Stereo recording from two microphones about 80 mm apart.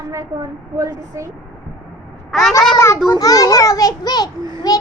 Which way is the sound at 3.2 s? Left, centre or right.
Left.